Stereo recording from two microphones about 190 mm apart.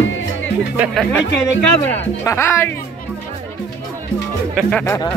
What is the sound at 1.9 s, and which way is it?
Speech, 15° left (ahead or behind).